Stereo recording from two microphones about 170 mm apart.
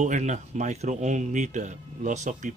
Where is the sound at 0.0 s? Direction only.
45° right (ahead or behind).